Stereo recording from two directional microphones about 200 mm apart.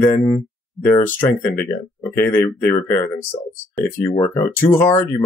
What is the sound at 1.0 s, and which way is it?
Speech, 10° left (ahead or behind).